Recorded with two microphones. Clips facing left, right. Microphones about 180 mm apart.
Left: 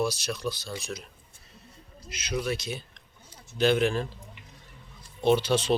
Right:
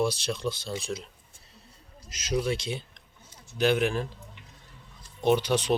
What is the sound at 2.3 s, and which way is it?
Speech, 25° right (ahead or behind).